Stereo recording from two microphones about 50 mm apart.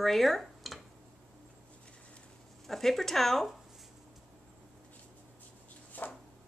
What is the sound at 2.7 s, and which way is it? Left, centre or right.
Speech, centre.